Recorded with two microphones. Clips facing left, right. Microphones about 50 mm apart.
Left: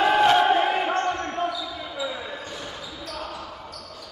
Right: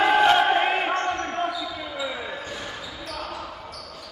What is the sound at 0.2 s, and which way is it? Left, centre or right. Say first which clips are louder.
Crowd: even; centre.